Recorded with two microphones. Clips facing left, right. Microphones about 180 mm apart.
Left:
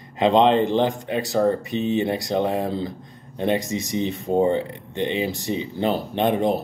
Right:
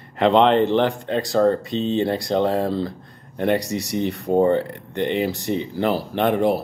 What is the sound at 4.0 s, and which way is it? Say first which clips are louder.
Speech: right 2 dB; 15° left (ahead or behind).